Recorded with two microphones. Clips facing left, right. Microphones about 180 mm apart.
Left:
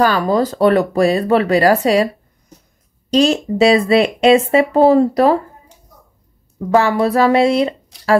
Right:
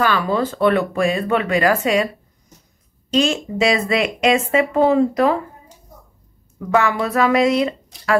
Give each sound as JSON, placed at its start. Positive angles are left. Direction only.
{"t": 0.0, "sound": "speech", "side_deg": 40}
{"t": 3.1, "sound": "speech", "side_deg": 35}
{"t": 6.7, "sound": "speech", "side_deg": 35}